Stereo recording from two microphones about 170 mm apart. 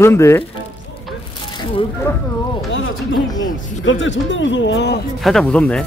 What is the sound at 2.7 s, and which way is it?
Speech, 90° left.